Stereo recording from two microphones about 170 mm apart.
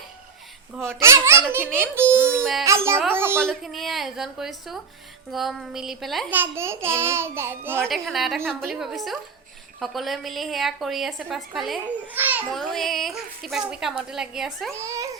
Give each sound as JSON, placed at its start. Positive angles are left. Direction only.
{"t": 0.9, "sound": "a child's voice", "side_deg": -15}
{"t": 2.4, "sound": "a woman's voice", "side_deg": 0}
{"t": 2.6, "sound": "a child's voice", "side_deg": -15}
{"t": 3.3, "sound": "a woman's voice", "side_deg": 0}
{"t": 6.3, "sound": "a child's voice", "side_deg": -15}
{"t": 7.9, "sound": "a woman's voice", "side_deg": 0}
{"t": 12.1, "sound": "a child's voice", "side_deg": -10}
{"t": 12.5, "sound": "a woman's voice", "side_deg": 0}
{"t": 14.7, "sound": "speech", "side_deg": -20}